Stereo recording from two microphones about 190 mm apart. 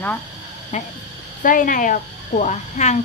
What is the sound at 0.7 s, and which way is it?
A woman's voice, 35° left (ahead or behind).